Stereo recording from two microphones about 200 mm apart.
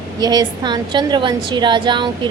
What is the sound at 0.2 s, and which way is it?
A woman's voice, 20° right (ahead or behind).